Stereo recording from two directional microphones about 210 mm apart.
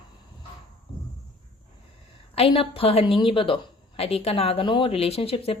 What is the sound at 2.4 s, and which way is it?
A woman's voice, 25° left (ahead or behind).